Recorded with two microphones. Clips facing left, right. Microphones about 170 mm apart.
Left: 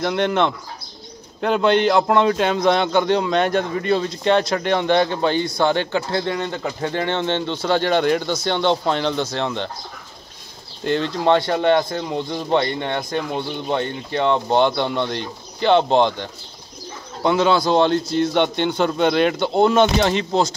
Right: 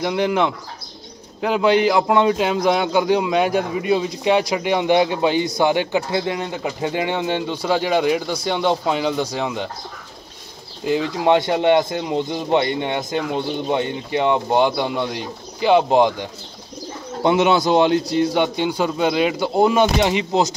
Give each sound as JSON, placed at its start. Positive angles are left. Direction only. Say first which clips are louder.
{"t": 0.0, "sound": "speech", "louder": "even", "side_deg": -5}
{"t": 10.8, "sound": "speech", "louder": "right 1 dB", "side_deg": -5}
{"t": 17.2, "sound": "a man's voice", "louder": "right 1 dB", "side_deg": -20}